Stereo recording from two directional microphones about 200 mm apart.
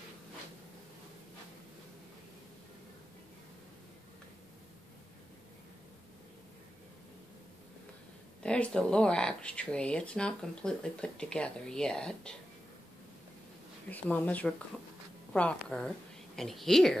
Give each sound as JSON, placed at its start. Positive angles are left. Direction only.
{"t": 8.4, "sound": "speech", "side_deg": 5}
{"t": 13.8, "sound": "speech", "side_deg": 10}